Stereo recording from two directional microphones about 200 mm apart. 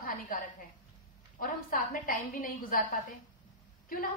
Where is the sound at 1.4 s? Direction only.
45° left (ahead or behind).